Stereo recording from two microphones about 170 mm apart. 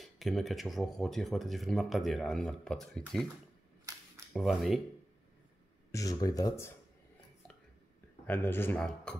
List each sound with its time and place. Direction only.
0.0 s speech: centre (ahead or behind)
4.3 s speech: centre (ahead or behind)
5.9 s speech: 20° left (ahead or behind)
8.3 s speech: 10° left (ahead or behind)